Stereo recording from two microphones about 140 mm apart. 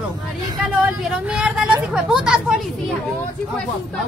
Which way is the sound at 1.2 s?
5° right (ahead or behind).